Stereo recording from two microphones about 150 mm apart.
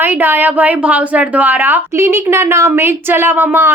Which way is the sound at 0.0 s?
10° right (ahead or behind).